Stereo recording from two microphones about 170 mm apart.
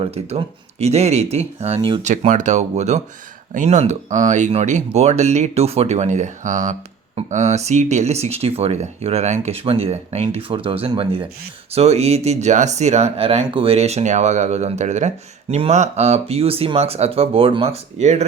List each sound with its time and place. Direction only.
0.0 s speech: 35° right (ahead or behind)
2.0 s speech: 45° right (ahead or behind)